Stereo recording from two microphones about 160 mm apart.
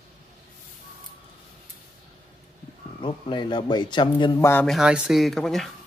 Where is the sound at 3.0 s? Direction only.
30° left (ahead or behind).